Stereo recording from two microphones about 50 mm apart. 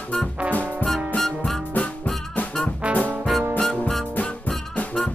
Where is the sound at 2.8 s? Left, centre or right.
Right.